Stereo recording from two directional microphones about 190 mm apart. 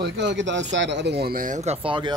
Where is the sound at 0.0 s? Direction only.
70° right (ahead or behind).